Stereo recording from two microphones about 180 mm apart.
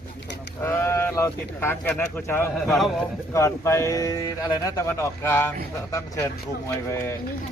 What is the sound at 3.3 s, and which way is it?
Speech, 15° left (ahead or behind).